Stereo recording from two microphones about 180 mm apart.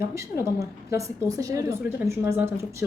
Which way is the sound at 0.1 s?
15° right (ahead or behind).